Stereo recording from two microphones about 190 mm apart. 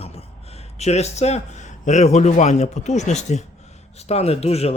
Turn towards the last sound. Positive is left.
turn(degrees=35)  # may be behind; listen again after turning